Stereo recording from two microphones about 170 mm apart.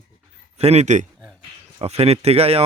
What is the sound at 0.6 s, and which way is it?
A man's voice, 40° right (ahead or behind).